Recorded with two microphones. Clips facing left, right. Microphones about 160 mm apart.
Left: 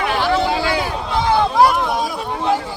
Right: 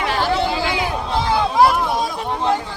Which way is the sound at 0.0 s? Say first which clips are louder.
Left 1 dB; 35° right (ahead or behind).